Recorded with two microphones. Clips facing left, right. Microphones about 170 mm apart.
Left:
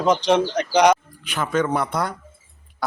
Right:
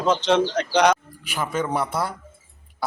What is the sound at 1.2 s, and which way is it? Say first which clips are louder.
Speech: left 4 dB; 10° right (ahead or behind).